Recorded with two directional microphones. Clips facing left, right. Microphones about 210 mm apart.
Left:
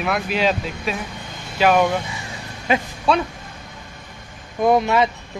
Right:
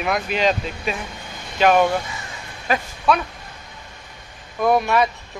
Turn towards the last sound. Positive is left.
turn(degrees=20)  # may be behind; listen again after turning